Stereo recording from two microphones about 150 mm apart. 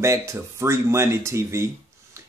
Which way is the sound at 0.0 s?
20° right (ahead or behind).